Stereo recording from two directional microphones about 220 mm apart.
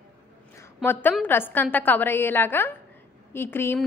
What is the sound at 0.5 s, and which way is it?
A woman's voice, 10° left (ahead or behind).